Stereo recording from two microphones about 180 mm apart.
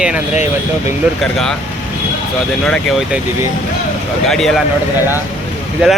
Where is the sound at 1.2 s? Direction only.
Centre (ahead or behind).